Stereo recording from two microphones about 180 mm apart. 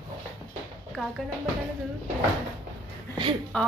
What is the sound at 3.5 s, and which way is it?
Speech, 5° left (ahead or behind).